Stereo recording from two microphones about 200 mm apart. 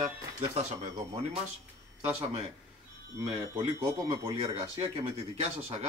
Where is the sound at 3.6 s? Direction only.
30° right (ahead or behind).